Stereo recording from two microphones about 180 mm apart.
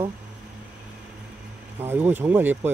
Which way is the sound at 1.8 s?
10° right (ahead or behind).